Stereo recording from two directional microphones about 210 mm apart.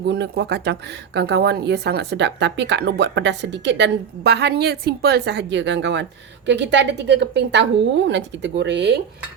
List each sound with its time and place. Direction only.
0.0 s speech: 50° right (ahead or behind)